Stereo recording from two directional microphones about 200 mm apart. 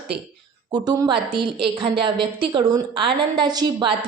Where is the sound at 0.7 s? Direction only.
20° right (ahead or behind).